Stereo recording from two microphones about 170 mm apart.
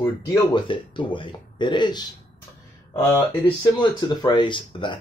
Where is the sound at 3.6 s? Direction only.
25° left (ahead or behind).